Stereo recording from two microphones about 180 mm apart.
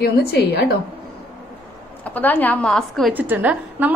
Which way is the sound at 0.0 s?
60° left (ahead or behind).